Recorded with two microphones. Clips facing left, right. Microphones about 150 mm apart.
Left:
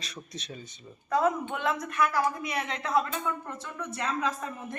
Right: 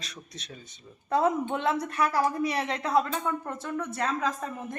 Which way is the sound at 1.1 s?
30° right (ahead or behind).